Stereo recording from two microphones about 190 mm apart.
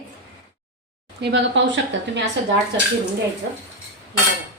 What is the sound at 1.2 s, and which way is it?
A woman's voice, 70° right (ahead or behind).